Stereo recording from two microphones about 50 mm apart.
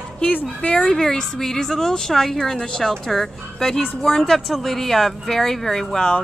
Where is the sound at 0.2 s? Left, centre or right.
Left.